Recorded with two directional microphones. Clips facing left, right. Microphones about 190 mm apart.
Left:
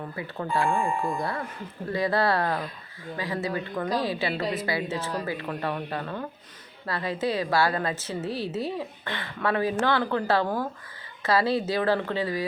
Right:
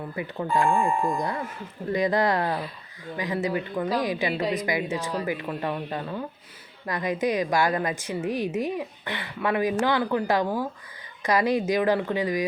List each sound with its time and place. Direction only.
0.2 s a woman's voice: 15° right (ahead or behind)
1.9 s a woman's voice: 20° right (ahead or behind)